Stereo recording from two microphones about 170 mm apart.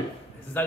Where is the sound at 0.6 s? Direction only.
10° left (ahead or behind).